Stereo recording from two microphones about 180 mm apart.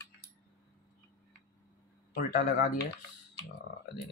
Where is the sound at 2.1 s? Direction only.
70° left (ahead or behind).